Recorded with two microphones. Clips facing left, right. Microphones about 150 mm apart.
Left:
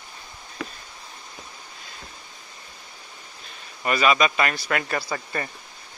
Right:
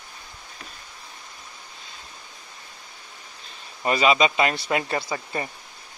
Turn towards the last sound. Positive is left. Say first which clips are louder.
# even
turn(degrees=-20)  # may be behind; listen again after turning